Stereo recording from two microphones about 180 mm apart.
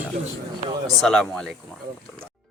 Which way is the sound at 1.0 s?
Centre (ahead or behind).